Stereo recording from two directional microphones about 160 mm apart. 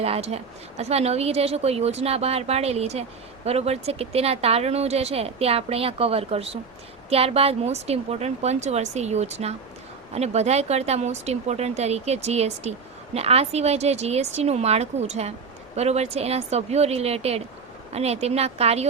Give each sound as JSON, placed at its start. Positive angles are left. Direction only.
{"t": 0.0, "sound": "speech", "side_deg": -40}